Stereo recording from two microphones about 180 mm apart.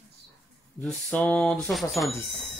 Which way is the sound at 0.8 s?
5° left (ahead or behind).